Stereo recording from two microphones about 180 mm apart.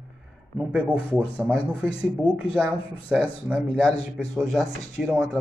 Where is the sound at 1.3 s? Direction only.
5° left (ahead or behind).